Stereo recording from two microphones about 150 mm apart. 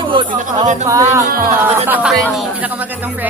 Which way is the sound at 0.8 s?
20° right (ahead or behind).